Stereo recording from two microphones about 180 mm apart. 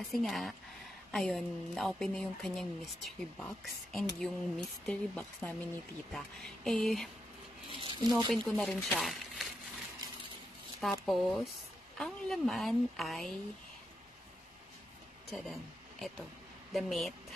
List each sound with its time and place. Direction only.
0.1 s speech: centre (ahead or behind)
7.7 s speech: 25° right (ahead or behind)
8.3 s speech: centre (ahead or behind)
10.8 s speech: centre (ahead or behind)
15.3 s speech: centre (ahead or behind)